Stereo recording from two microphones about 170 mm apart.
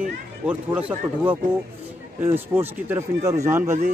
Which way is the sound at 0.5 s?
10° right (ahead or behind).